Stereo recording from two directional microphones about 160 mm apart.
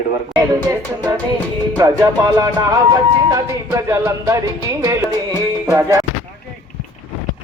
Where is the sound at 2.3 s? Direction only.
20° right (ahead or behind).